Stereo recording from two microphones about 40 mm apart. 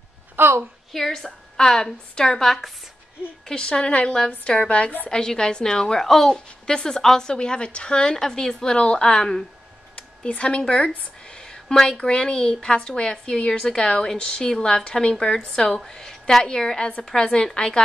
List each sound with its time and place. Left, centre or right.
0.4 s a sound: right
0.9 s a woman's voice: centre; by 4.9 s left
5.1 s a woman's voice: centre
8.7 s speech: left
9.9 s a sound: left
10.7 s a woman's voice: left